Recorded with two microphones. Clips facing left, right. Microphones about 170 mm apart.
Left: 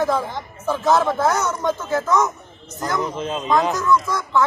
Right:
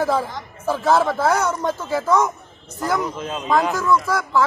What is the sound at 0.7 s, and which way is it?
A man's voice, 5° right (ahead or behind).